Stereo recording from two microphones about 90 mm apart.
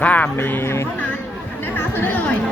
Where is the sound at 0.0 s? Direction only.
15° left (ahead or behind).